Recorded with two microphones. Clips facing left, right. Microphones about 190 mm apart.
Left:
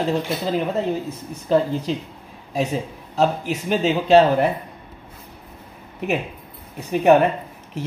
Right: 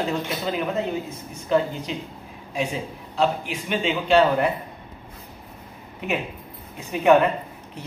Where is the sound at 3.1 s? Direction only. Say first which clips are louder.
Left 3 dB; 40° left (ahead or behind).